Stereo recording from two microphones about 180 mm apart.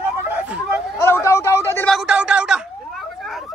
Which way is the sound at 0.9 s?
15° left (ahead or behind).